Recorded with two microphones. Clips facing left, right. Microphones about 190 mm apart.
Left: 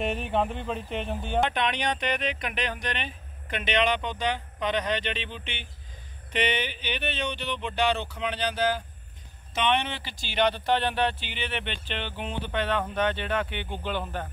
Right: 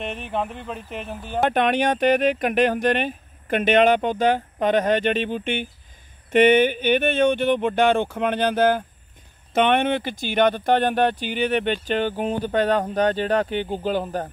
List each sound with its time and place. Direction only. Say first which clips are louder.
0.0 s speech: even; centre (ahead or behind)
1.5 s speech: right 8 dB; 45° right (ahead or behind)